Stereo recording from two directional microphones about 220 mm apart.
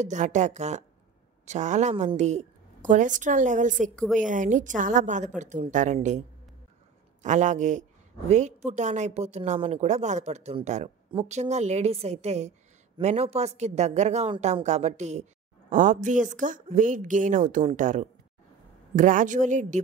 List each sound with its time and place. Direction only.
0.0 s a woman's voice: 35° right (ahead or behind)
7.2 s a woman's voice: 35° right (ahead or behind)